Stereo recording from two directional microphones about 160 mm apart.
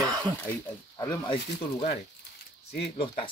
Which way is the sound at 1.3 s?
35° left (ahead or behind).